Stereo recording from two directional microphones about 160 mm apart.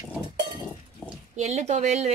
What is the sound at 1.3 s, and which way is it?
Speech, 45° right (ahead or behind).